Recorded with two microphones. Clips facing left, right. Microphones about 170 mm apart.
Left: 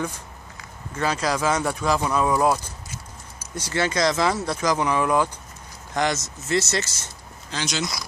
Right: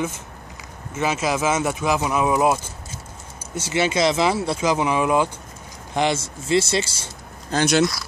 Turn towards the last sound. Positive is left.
turn(degrees=-55)  # may be behind; listen again after turning